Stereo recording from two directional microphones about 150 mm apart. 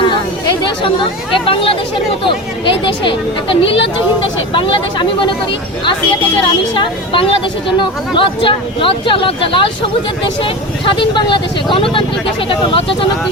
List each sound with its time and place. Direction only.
0.0 s chatter: 30° left (ahead or behind)
1.5 s speech: 35° left (ahead or behind)